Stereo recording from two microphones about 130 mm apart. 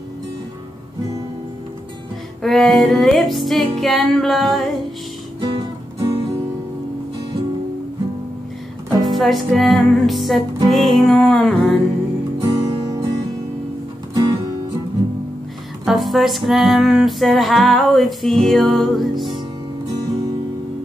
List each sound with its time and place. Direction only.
2.4 s music: centre (ahead or behind)
5.4 s music: 35° right (ahead or behind)
9.0 s music: centre (ahead or behind)
12.4 s music: 30° right (ahead or behind)
14.1 s music: 30° right (ahead or behind)
15.8 s music: centre (ahead or behind)